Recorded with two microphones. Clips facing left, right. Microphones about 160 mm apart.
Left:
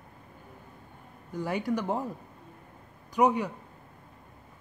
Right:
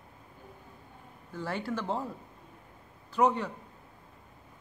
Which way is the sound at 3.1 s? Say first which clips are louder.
Left 2 dB; 15° left (ahead or behind).